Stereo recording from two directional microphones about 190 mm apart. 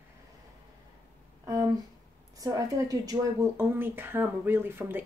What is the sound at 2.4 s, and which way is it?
A woman's voice, 20° right (ahead or behind).